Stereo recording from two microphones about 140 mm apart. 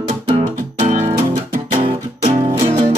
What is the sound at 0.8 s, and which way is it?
Music, 60° right (ahead or behind).